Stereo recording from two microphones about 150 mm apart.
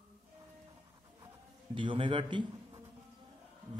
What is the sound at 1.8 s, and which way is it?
A man's voice, 35° right (ahead or behind).